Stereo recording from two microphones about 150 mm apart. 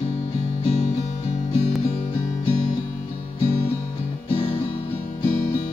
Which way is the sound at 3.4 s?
45° left (ahead or behind).